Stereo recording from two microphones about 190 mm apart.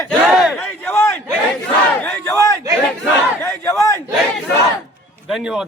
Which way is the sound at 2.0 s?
15° left (ahead or behind).